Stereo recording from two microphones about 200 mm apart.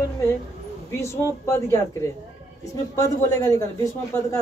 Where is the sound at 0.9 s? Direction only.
15° left (ahead or behind).